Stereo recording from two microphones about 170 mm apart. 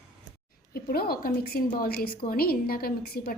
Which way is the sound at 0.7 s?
65° left (ahead or behind).